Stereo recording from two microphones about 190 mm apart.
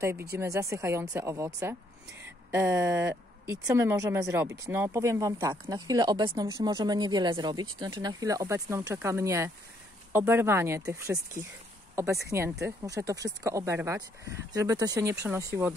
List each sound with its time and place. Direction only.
0.3 s speech: 15° right (ahead or behind)